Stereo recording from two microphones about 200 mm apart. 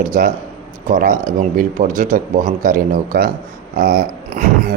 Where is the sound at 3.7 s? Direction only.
45° right (ahead or behind).